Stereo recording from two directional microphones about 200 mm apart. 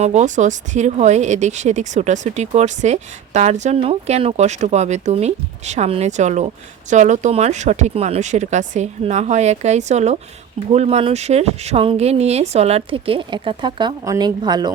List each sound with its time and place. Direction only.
0.0 s speech: 35° right (ahead or behind)